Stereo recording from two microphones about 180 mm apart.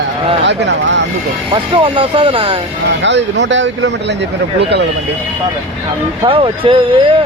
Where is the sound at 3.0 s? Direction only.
80° right.